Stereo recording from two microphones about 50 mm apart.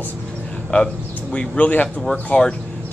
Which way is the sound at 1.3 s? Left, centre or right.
Left.